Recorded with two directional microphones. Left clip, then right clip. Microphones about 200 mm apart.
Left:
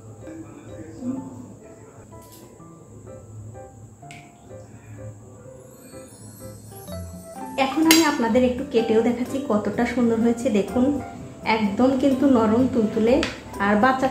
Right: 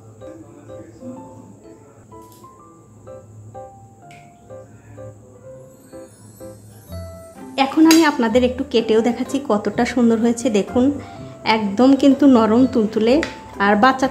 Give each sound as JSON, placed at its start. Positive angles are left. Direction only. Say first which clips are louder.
{"t": 6.9, "sound": "music", "louder": "right 2 dB", "side_deg": 0}
{"t": 7.5, "sound": "speech", "louder": "right 5 dB", "side_deg": -45}